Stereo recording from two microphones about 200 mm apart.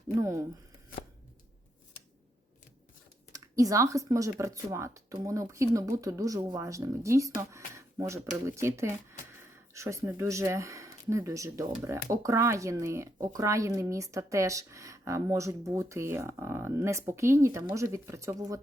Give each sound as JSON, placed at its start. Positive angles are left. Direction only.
{"t": 0.2, "sound": "speech", "side_deg": -15}
{"t": 3.3, "sound": "speech", "side_deg": -15}